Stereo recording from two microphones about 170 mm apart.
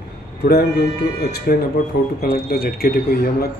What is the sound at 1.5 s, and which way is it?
Speech, 60° left (ahead or behind).